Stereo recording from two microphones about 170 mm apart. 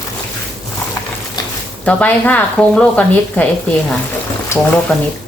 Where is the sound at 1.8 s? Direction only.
10° left (ahead or behind).